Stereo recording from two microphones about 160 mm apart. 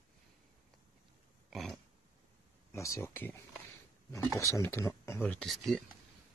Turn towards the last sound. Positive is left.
turn(degrees=0)  # may be behind; listen again after turning